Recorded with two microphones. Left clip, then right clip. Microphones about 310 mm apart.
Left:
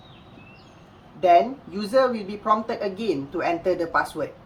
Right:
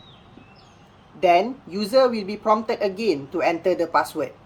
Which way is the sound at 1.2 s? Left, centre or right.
Right.